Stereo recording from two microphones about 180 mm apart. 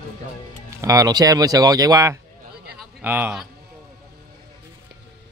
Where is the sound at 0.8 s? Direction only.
20° right (ahead or behind).